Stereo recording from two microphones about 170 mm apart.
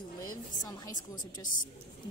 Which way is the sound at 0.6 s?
20° left (ahead or behind).